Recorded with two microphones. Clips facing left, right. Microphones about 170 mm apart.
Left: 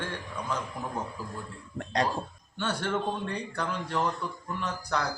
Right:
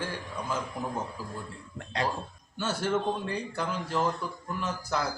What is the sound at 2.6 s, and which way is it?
Speech, 5° right (ahead or behind).